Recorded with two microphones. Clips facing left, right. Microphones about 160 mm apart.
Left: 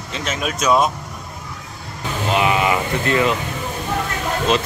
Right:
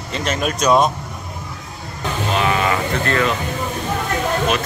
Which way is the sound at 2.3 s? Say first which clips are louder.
Left 2 dB; 15° left (ahead or behind).